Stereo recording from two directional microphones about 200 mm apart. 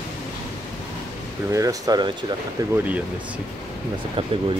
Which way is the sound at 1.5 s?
15° right (ahead or behind).